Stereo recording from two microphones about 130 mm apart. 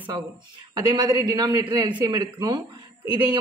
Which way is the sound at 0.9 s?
30° right (ahead or behind).